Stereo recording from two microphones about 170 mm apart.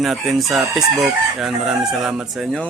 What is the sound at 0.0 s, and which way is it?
Chicken, centre (ahead or behind).